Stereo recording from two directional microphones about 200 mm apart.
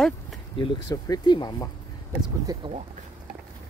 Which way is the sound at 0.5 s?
20° left (ahead or behind).